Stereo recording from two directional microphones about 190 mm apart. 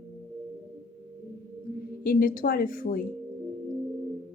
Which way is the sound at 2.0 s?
50° left (ahead or behind).